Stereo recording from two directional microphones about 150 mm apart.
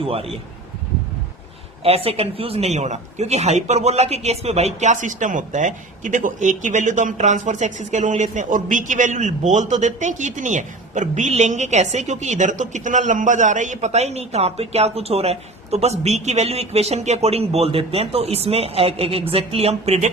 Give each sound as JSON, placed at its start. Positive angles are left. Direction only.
{"t": 0.0, "sound": "a woman's voice", "side_deg": -40}
{"t": 1.8, "sound": "a man's voice", "side_deg": -40}